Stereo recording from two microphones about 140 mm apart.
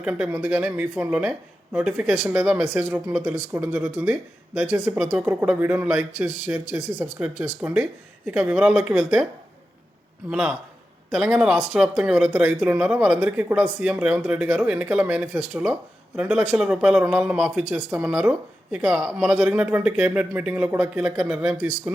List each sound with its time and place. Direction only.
0.0 s speech: 5° right (ahead or behind)
10.2 s speech: 5° right (ahead or behind)